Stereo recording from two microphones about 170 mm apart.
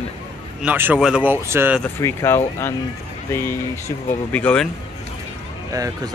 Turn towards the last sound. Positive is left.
turn(degrees=-20)  # may be behind; listen again after turning